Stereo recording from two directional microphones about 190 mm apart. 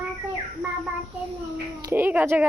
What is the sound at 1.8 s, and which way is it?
Speech, 15° right (ahead or behind).